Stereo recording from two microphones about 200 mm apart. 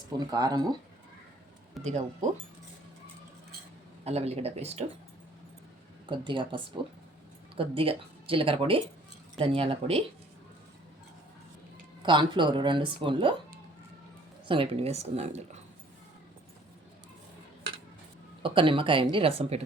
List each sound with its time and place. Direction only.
0.2 s speech: 20° right (ahead or behind)
1.8 s speech: 35° right (ahead or behind)
4.0 s speech: 30° right (ahead or behind)
6.1 s speech: 25° right (ahead or behind)
12.0 s speech: 25° right (ahead or behind)
14.4 s speech: 25° right (ahead or behind)
18.4 s speech: 25° right (ahead or behind)